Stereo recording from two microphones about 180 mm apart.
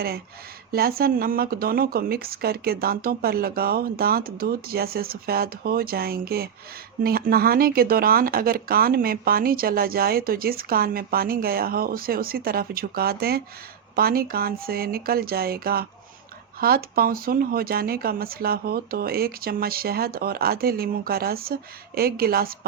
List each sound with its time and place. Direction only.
0.7 s speech: 55° right (ahead or behind)